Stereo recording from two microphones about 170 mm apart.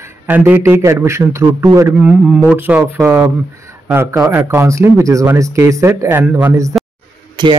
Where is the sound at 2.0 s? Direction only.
5° right (ahead or behind).